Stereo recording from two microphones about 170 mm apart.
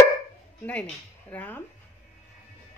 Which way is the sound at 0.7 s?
10° left (ahead or behind).